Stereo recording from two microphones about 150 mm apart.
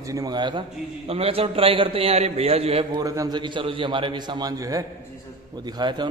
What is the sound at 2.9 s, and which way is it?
A man's voice, 25° right (ahead or behind).